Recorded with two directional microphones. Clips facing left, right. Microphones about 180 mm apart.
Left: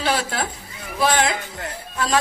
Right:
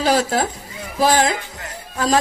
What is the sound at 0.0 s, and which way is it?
A woman's voice, 40° right (ahead or behind).